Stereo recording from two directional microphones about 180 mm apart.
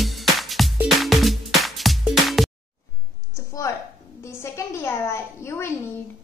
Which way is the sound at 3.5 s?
15° left (ahead or behind).